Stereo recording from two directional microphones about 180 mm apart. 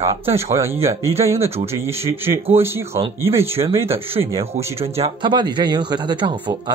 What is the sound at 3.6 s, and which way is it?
Speech, 15° right (ahead or behind).